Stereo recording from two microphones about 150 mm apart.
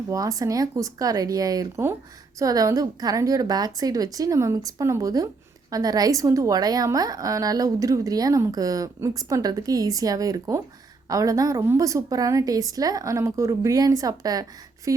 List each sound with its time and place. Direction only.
0.1 s a woman's voice: 20° right (ahead or behind)